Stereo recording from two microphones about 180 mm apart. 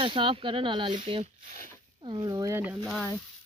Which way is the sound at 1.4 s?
45° right (ahead or behind).